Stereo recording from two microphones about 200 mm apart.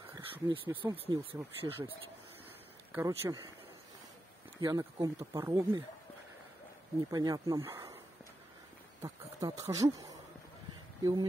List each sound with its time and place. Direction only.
0.1 s speech: 25° right (ahead or behind)
2.9 s speech: 10° right (ahead or behind)
4.6 s speech: 20° right (ahead or behind)
7.1 s speech: 20° right (ahead or behind)
9.0 s speech: 15° right (ahead or behind)